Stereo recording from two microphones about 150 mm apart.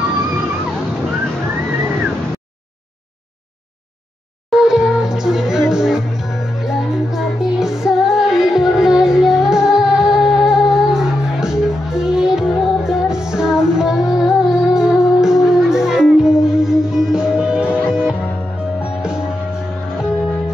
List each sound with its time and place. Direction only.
4.5 s music: 5° right (ahead or behind)